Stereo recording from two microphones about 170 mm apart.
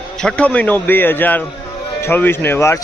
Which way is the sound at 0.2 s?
5° left (ahead or behind).